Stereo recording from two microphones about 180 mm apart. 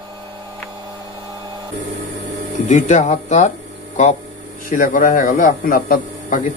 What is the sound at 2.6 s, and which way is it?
Speech, 40° left (ahead or behind).